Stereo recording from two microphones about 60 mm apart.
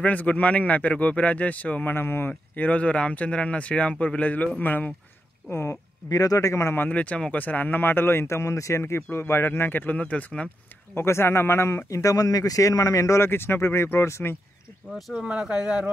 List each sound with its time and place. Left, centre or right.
0.0 s speech: left
1.9 s speech: left
5.5 s speech: left
6.0 s a man's voice: left
6.9 s speech: left
11.0 s speech: left
12.0 s speech: left
13.2 s speech: left
14.9 s speech: centre
15.2 s speech: centre